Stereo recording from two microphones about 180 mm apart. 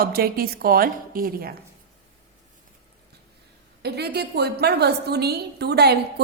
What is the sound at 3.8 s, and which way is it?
A woman's voice, 65° right (ahead or behind).